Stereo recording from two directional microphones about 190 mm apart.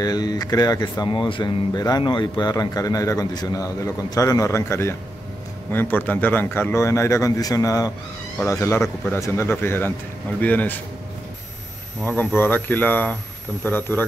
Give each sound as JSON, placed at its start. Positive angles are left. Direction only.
{"t": 0.0, "sound": "speech", "side_deg": 20}
{"t": 12.0, "sound": "speech", "side_deg": 10}